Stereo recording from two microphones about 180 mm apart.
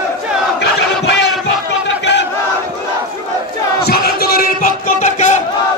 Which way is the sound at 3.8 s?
60° left (ahead or behind).